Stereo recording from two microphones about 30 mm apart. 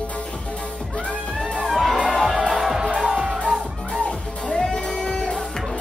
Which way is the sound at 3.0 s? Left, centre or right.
Right.